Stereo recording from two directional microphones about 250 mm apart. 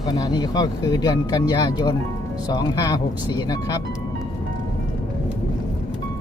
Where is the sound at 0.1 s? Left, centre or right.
Centre.